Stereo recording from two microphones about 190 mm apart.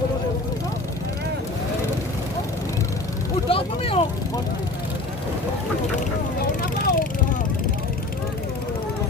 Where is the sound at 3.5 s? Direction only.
30° left (ahead or behind).